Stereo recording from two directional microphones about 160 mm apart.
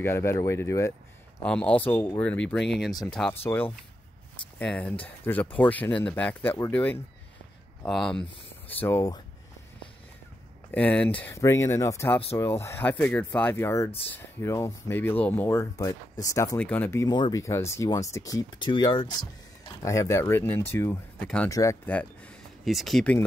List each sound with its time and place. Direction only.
0.0 s speech: 15° left (ahead or behind)
1.4 s speech: 5° left (ahead or behind)
10.7 s speech: 10° left (ahead or behind)
16.5 s speech: 10° left (ahead or behind)
21.5 s speech: 20° left (ahead or behind)
21.8 s speech: 10° left (ahead or behind)